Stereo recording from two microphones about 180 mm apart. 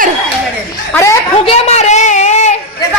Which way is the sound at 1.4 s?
40° left (ahead or behind).